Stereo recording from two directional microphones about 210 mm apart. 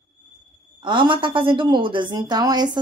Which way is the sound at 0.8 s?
20° right (ahead or behind).